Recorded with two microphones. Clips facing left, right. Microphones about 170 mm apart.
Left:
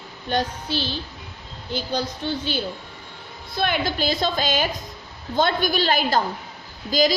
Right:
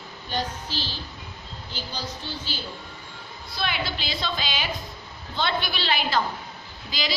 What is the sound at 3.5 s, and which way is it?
A woman's voice, 50° left (ahead or behind).